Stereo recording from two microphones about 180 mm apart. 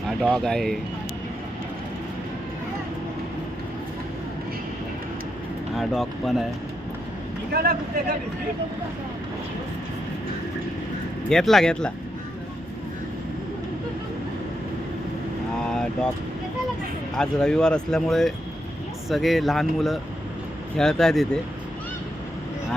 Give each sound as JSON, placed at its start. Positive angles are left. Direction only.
{"t": 0.2, "sound": "speech", "side_deg": 0}
{"t": 5.7, "sound": "speech", "side_deg": 0}
{"t": 7.5, "sound": "speech", "side_deg": -50}
{"t": 11.3, "sound": "speech", "side_deg": 0}
{"t": 15.6, "sound": "vehicle", "side_deg": 5}
{"t": 17.2, "sound": "speech", "side_deg": 5}